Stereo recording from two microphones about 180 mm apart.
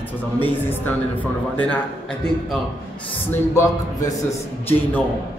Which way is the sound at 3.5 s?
15° left (ahead or behind).